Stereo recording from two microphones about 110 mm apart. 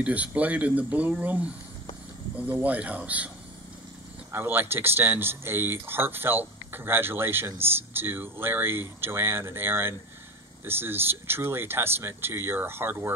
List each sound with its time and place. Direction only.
0.0 s speech: 15° right (ahead or behind)
2.5 s speech: 15° right (ahead or behind)
4.3 s speech: 20° right (ahead or behind)